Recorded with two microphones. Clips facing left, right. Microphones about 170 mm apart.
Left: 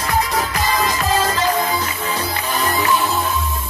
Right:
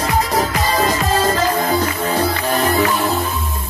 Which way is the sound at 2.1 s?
60° right (ahead or behind).